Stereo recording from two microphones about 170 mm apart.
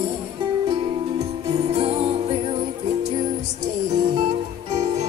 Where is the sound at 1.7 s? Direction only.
35° right (ahead or behind).